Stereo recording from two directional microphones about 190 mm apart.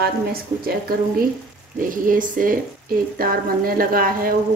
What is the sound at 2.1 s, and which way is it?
Speech, 45° right (ahead or behind).